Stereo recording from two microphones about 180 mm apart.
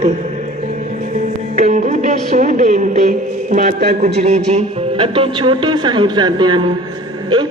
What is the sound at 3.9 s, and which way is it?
Speech, 40° right (ahead or behind).